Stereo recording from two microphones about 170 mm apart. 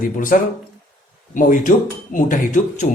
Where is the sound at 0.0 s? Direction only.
55° left (ahead or behind).